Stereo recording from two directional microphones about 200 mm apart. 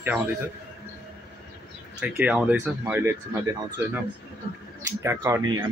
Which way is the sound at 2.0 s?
5° right (ahead or behind).